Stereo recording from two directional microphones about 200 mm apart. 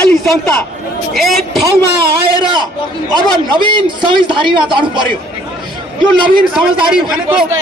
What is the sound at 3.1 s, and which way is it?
A man's voice, 20° right (ahead or behind).